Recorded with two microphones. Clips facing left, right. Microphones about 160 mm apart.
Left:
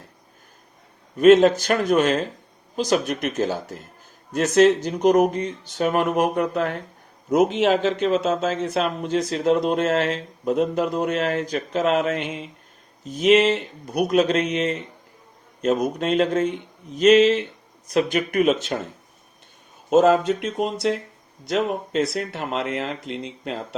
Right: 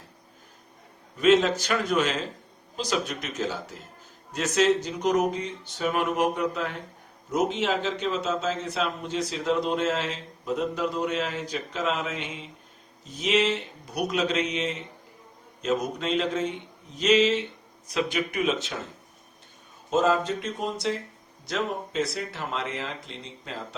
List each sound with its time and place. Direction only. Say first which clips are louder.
1.2 s a man's voice: left 7 dB; 55° left (ahead or behind)
7.3 s speech: left 7 dB; 65° left (ahead or behind)
19.9 s speech: left 7 dB; 65° left (ahead or behind)